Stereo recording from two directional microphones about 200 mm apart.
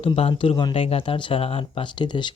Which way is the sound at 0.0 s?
30° left (ahead or behind).